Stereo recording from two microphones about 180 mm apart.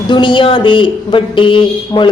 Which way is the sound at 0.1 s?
25° left (ahead or behind).